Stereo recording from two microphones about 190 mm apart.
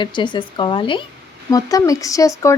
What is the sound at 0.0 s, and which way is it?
Speech, 25° left (ahead or behind).